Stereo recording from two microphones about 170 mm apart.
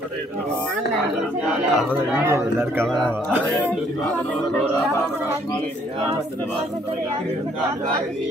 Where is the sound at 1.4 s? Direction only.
5° right (ahead or behind).